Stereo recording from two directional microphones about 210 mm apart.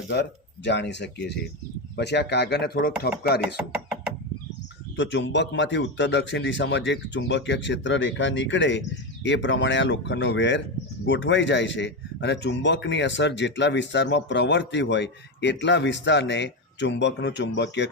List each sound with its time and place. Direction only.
0.1 s a man's voice: 55° left (ahead or behind)
4.9 s a man's voice: 55° left (ahead or behind)